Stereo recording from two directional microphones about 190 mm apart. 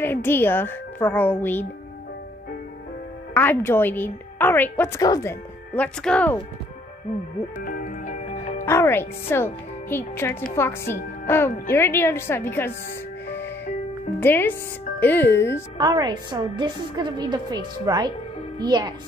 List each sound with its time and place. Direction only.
0.0 s a woman's voice: 10° left (ahead or behind)
3.3 s a woman's voice: 10° left (ahead or behind)
7.6 s music: 45° left (ahead or behind)
8.6 s a woman's voice: 15° left (ahead or behind)
14.2 s a woman's voice: 10° left (ahead or behind)
15.8 s a woman's voice: 20° right (ahead or behind)